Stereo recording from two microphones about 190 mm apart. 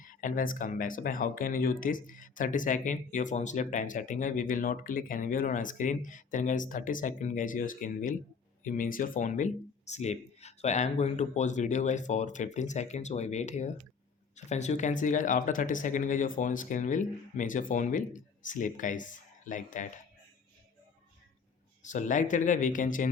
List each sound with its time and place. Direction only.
0.0 s speech: 45° left (ahead or behind)
21.8 s speech: 40° left (ahead or behind)